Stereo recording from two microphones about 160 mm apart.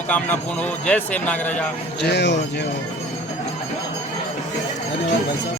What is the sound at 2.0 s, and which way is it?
Speech, 90° left.